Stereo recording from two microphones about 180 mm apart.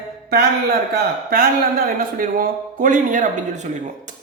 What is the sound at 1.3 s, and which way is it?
A man's voice, 55° right (ahead or behind).